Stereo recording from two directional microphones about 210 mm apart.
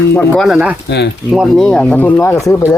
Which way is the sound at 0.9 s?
55° left (ahead or behind).